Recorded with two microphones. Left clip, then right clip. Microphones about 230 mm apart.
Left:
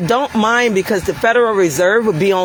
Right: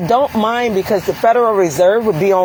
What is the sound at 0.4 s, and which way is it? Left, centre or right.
Speech, left.